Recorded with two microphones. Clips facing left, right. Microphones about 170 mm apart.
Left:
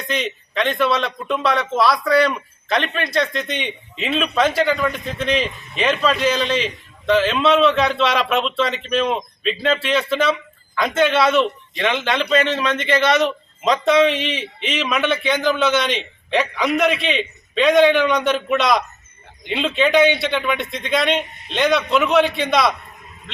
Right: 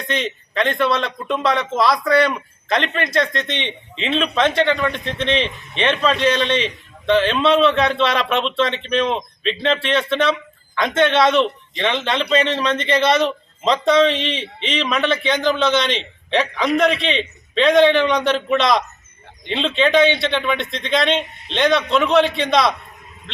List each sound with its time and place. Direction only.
0.1 s speech: centre (ahead or behind)
1.3 s speech: 20° right (ahead or behind)
1.9 s speech: centre (ahead or behind)